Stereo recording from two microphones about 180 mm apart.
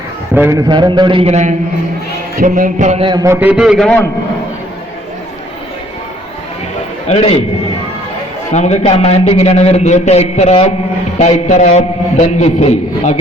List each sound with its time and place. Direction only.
0.3 s a man's voice: 15° right (ahead or behind)
0.7 s a man's voice: 25° right (ahead or behind)
2.4 s music: 45° right (ahead or behind)
3.1 s a man's voice: 20° right (ahead or behind)
3.4 s a man's voice: 5° right (ahead or behind)
7.1 s a man's voice: 35° left (ahead or behind)
8.5 s a man's voice: 40° left (ahead or behind)